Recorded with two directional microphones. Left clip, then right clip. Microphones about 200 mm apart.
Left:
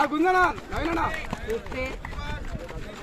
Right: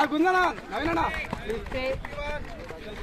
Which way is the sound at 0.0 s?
35° right (ahead or behind).